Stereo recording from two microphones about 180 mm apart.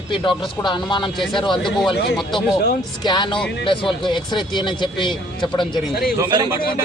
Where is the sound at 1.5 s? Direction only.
Centre (ahead or behind).